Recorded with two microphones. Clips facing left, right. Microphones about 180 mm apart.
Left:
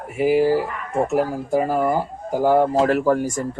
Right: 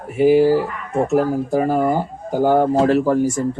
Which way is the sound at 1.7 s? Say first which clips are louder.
Right 2 dB; 30° right (ahead or behind).